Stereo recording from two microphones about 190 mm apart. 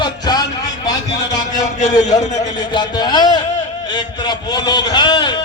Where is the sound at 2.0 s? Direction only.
40° left (ahead or behind).